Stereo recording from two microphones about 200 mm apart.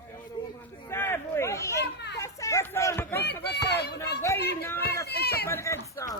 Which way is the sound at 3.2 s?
55° left (ahead or behind).